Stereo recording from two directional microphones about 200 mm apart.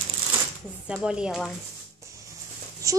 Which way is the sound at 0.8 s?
5° right (ahead or behind).